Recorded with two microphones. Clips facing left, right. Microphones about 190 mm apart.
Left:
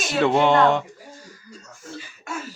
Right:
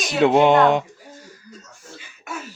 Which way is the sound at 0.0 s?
15° right (ahead or behind).